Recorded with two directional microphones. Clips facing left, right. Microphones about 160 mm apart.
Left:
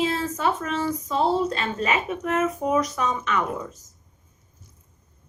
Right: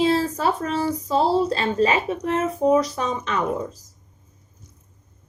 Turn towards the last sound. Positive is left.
turn(degrees=-30)  # may be behind; listen again after turning